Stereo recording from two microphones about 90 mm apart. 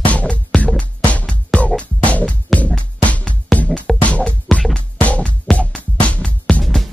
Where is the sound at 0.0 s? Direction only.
15° left (ahead or behind).